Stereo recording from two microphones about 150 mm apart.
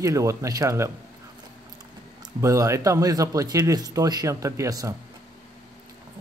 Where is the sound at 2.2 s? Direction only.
20° right (ahead or behind).